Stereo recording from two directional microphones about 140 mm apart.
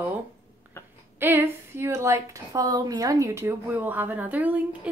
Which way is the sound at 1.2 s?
15° right (ahead or behind).